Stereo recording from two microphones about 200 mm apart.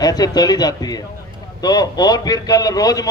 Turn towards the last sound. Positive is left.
turn(degrees=20)  # may be behind; listen again after turning